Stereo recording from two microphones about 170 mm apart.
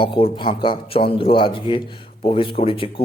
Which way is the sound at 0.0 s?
30° left (ahead or behind).